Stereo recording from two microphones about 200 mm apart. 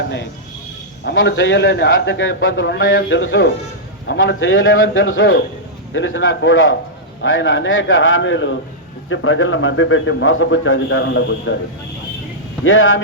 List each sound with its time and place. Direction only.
1.0 s a man's voice: 65° left (ahead or behind)
12.6 s a man's voice: 75° left (ahead or behind)